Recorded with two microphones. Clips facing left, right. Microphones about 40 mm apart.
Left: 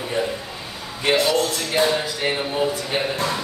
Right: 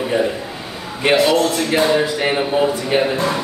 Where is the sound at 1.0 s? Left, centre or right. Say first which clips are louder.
Right 5 dB; right.